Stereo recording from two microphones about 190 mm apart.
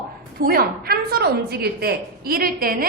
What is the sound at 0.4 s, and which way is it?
A woman's voice, 55° right (ahead or behind).